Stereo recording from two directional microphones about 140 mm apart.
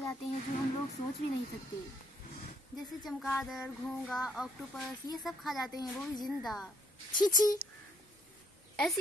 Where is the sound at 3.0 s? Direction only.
Centre (ahead or behind).